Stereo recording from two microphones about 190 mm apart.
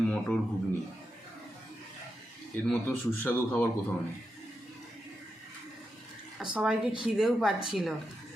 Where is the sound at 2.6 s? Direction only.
5° left (ahead or behind).